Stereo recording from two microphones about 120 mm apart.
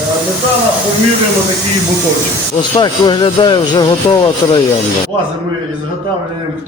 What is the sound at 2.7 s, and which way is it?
Speech, 35° left (ahead or behind).